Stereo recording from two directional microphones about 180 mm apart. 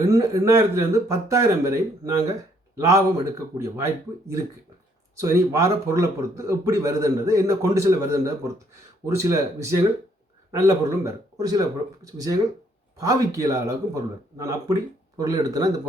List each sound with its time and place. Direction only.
0.0 s a man's voice: 20° right (ahead or behind)
5.1 s a man's voice: 15° right (ahead or behind)